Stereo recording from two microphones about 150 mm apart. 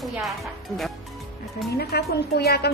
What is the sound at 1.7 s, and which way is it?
Speech, 90° left.